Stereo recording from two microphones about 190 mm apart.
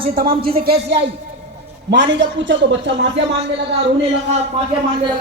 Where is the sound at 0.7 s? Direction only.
30° right (ahead or behind).